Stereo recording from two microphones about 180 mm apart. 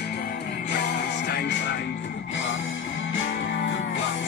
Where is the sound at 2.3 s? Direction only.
90° left.